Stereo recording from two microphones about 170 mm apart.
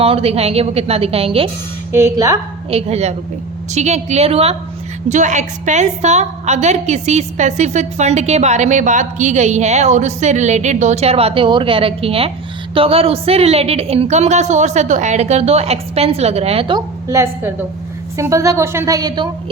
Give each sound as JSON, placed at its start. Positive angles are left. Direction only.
{"t": 0.0, "sound": "a woman's voice", "side_deg": -35}
{"t": 1.9, "sound": "a woman's voice", "side_deg": -15}
{"t": 2.6, "sound": "a woman's voice", "side_deg": -35}
{"t": 17.1, "sound": "a woman's voice", "side_deg": -15}